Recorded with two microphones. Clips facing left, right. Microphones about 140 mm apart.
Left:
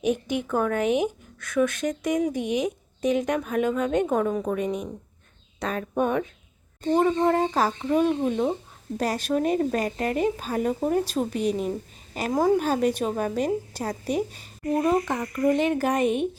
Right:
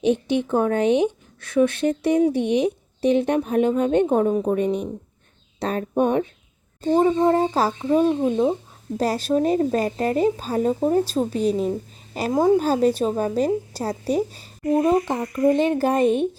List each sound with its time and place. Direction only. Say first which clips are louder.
0.0 s a woman's voice: right 5 dB; 30° right (ahead or behind)